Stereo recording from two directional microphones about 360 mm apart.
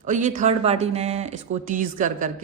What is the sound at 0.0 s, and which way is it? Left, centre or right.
Speech, right.